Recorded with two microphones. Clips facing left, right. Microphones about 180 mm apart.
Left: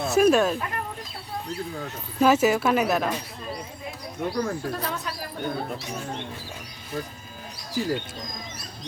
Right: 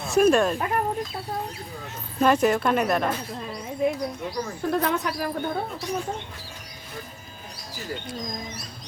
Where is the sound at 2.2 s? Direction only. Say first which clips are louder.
Left 1 dB; 5° left (ahead or behind).